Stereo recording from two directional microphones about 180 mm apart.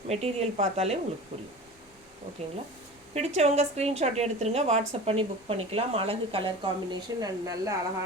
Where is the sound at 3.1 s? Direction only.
35° right (ahead or behind); by 7.7 s 20° right (ahead or behind).